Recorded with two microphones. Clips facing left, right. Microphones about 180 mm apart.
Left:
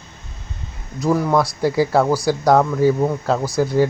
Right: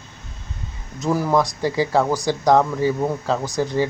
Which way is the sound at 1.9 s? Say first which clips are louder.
Left 3 dB; 15° right (ahead or behind).